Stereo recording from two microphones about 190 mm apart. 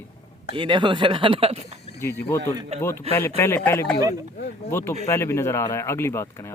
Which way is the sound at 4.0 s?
20° right (ahead or behind).